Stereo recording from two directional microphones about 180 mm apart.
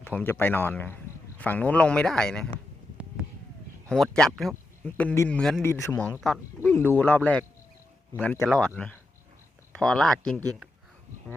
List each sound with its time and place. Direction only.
0.0 s speech: 10° left (ahead or behind)
3.8 s speech: 5° left (ahead or behind)
5.6 s speech: 15° left (ahead or behind)
6.1 s speech: centre (ahead or behind)